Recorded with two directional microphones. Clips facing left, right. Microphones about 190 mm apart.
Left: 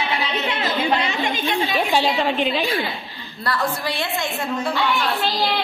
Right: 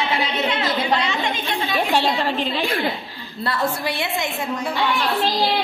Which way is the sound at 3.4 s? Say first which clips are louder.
Right 1 dB; 25° right (ahead or behind).